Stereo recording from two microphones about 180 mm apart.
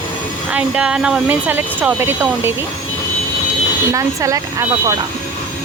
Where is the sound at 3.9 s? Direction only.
15° right (ahead or behind).